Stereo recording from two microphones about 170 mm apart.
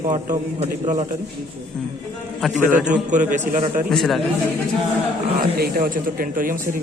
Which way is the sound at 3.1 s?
45° right (ahead or behind).